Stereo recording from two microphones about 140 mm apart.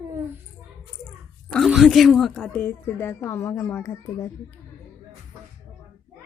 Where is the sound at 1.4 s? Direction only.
Centre (ahead or behind).